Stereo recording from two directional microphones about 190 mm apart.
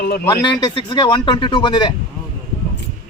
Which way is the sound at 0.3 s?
25° left (ahead or behind).